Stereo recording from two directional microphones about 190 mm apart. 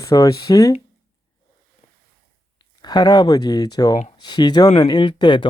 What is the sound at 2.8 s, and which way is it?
Speech, 20° left (ahead or behind).